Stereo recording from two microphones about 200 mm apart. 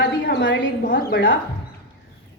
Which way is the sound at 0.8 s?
45° left (ahead or behind).